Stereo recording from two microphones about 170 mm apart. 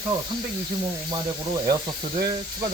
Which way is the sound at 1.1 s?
25° right (ahead or behind).